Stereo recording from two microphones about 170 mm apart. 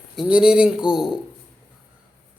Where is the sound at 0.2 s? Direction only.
5° right (ahead or behind).